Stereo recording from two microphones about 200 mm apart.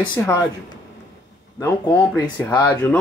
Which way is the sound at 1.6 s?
10° left (ahead or behind).